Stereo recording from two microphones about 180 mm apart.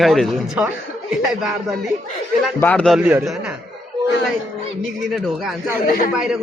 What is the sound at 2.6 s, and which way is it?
Speech, 10° left (ahead or behind).